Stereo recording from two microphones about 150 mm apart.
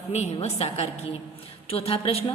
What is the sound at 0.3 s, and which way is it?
A woman's voice, 40° left (ahead or behind).